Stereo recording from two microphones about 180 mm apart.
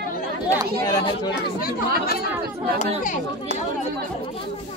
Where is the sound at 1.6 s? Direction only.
55° left (ahead or behind).